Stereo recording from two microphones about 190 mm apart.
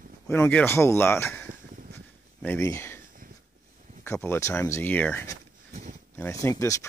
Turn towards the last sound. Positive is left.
turn(degrees=15)  # may be behind; listen again after turning